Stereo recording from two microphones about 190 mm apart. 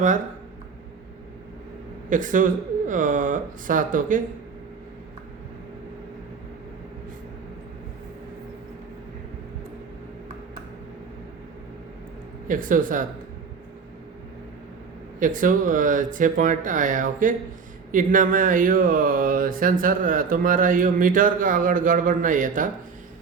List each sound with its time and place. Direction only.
2.0 s speech: 45° right (ahead or behind)
12.5 s speech: 45° right (ahead or behind)
15.2 s speech: 45° right (ahead or behind)